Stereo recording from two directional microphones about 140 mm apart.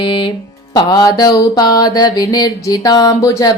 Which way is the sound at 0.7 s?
30° left (ahead or behind).